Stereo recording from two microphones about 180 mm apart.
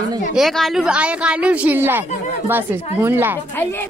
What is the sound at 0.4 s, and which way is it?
A woman's voice, centre (ahead or behind).